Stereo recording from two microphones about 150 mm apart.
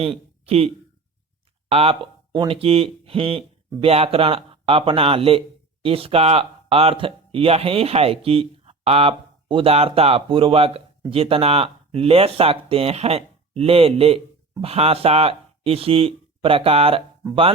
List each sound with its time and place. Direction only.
0.4 s speech: 40° right (ahead or behind)
1.7 s speech: 40° right (ahead or behind)